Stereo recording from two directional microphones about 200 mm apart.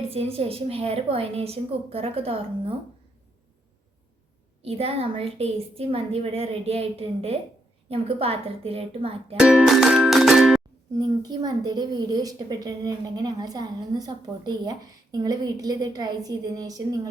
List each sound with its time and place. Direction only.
0.1 s a woman's voice: 30° right (ahead or behind)
4.6 s a woman's voice: 30° right (ahead or behind)
9.4 s music: 5° right (ahead or behind)
10.9 s a woman's voice: 20° right (ahead or behind)